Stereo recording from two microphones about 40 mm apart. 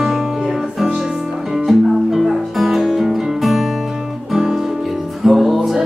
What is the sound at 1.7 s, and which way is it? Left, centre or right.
Music, centre.